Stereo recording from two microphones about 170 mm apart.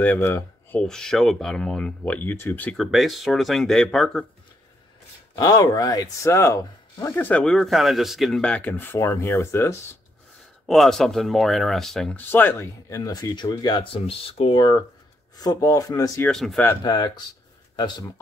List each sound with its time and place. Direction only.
0.0 s speech: 10° left (ahead or behind)
5.4 s speech: 20° left (ahead or behind)
10.7 s speech: centre (ahead or behind); by 16.3 s 20° left (ahead or behind)
16.3 s speech: 5° left (ahead or behind)
16.8 s speech: 25° left (ahead or behind)